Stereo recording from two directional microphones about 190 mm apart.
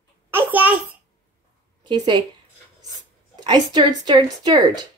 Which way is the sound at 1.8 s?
25° right (ahead or behind).